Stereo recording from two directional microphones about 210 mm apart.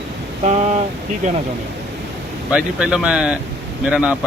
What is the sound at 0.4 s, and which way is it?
Speech, 30° right (ahead or behind).